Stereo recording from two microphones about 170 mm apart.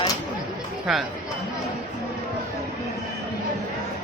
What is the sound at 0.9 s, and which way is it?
Speech, centre (ahead or behind).